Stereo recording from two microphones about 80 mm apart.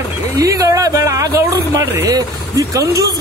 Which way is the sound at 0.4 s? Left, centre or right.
Right.